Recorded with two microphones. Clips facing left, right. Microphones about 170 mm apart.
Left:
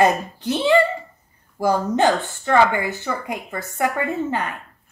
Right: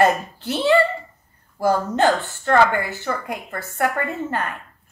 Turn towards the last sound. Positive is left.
turn(degrees=15)  # may be behind; listen again after turning